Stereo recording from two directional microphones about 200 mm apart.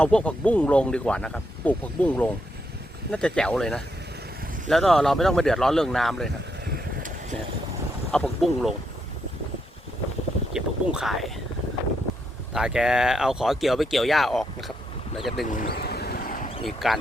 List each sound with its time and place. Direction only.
0.0 s speech: 5° left (ahead or behind)
6.7 s vehicle: 40° right (ahead or behind)
8.1 s speech: 5° left (ahead or behind)
10.5 s a sound: centre (ahead or behind)
12.5 s speech: 5° right (ahead or behind)
15.4 s a sound: 45° left (ahead or behind)
16.6 s speech: centre (ahead or behind)